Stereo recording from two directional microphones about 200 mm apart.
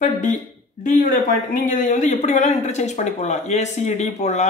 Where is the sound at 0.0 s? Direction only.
35° left (ahead or behind).